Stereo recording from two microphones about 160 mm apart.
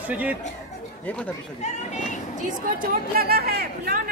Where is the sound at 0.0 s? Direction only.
10° right (ahead or behind).